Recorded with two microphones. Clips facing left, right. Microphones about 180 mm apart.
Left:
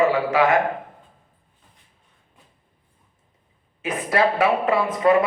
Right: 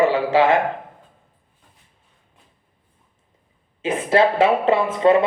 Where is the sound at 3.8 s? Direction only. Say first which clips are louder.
Right 4 dB; 25° right (ahead or behind).